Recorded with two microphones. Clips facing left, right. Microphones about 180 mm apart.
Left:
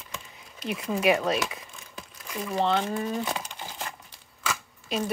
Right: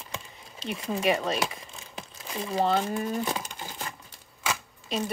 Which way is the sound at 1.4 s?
30° right (ahead or behind).